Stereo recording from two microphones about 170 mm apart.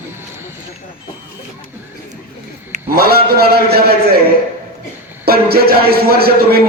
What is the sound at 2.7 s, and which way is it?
Speech, 60° right (ahead or behind).